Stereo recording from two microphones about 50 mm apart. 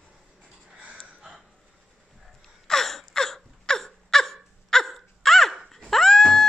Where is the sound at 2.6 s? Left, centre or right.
Centre.